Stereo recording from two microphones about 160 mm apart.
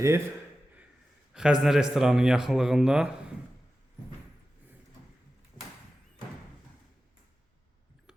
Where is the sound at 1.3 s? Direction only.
5° right (ahead or behind).